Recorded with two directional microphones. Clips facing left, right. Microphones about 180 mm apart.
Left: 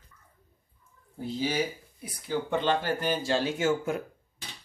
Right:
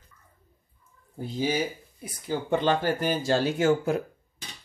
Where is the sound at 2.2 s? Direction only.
40° right (ahead or behind).